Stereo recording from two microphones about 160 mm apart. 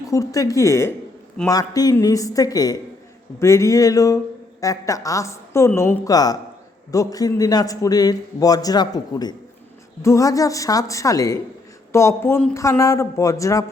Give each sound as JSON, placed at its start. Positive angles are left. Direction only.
{"t": 0.1, "sound": "a man's voice", "side_deg": 20}